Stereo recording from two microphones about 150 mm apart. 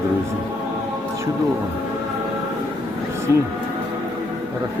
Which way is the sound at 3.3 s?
20° right (ahead or behind).